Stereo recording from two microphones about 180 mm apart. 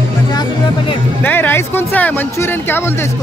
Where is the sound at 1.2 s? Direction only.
10° left (ahead or behind).